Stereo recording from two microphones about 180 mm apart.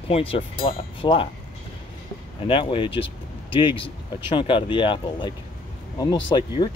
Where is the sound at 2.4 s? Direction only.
30° left (ahead or behind).